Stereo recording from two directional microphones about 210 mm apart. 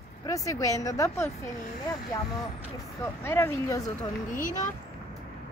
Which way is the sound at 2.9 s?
10° left (ahead or behind).